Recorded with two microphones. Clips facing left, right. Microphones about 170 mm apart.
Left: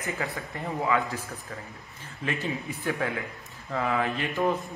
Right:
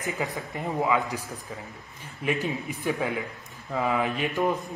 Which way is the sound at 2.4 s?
15° right (ahead or behind).